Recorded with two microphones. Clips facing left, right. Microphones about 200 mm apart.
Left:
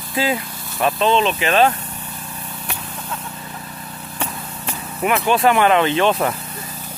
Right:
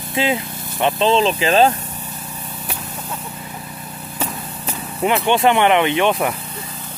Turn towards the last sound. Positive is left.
turn(degrees=-15)  # may be behind; listen again after turning